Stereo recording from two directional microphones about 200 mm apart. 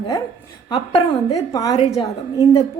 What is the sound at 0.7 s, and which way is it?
A woman's voice, 20° left (ahead or behind).